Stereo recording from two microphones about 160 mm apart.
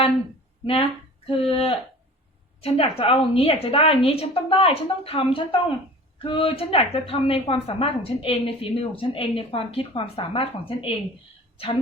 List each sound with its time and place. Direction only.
0.6 s a woman's voice: 35° left (ahead or behind)